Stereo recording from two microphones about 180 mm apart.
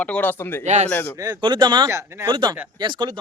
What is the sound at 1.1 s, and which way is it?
Speech, 20° right (ahead or behind).